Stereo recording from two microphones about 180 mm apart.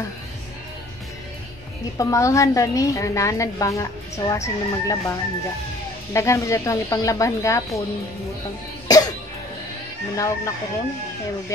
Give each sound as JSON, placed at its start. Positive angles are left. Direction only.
{"t": 2.0, "sound": "a woman's voice", "side_deg": 15}
{"t": 6.1, "sound": "a woman's voice", "side_deg": 15}
{"t": 8.8, "sound": "cough", "side_deg": 20}
{"t": 10.1, "sound": "speech", "side_deg": 20}